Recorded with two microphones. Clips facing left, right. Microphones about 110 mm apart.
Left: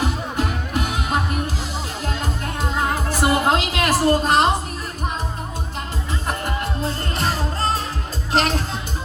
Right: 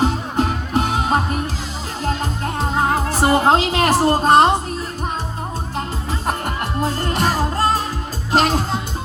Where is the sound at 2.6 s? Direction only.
40° right (ahead or behind).